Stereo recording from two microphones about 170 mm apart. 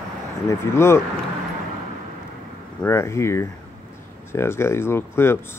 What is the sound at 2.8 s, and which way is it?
Speech, 15° left (ahead or behind).